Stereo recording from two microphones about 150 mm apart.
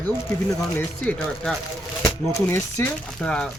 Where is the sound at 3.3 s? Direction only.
5° left (ahead or behind).